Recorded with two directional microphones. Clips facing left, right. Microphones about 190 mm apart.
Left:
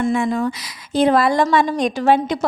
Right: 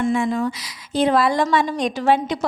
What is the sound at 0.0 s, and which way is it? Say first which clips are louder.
A woman's voice: left 1 dB; 50° left (ahead or behind).